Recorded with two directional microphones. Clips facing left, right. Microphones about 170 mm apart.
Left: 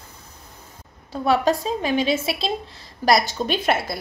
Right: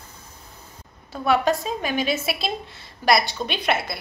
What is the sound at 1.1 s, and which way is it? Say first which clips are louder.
A woman's voice: left 1 dB; 30° left (ahead or behind).